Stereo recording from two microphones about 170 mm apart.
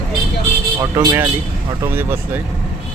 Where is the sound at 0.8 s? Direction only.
15° right (ahead or behind).